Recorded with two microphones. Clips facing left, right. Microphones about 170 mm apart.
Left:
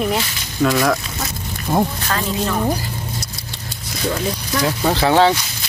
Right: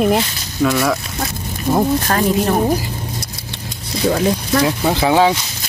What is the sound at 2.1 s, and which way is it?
Speech, 40° right (ahead or behind).